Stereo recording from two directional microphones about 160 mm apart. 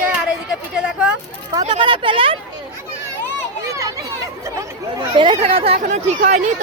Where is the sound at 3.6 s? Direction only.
20° right (ahead or behind).